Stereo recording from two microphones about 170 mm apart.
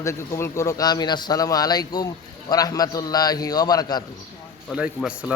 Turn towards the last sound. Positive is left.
turn(degrees=-5)  # may be behind; listen again after turning